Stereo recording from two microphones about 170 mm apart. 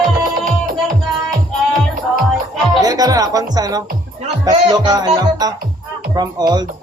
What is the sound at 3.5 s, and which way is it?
Music, 25° right (ahead or behind).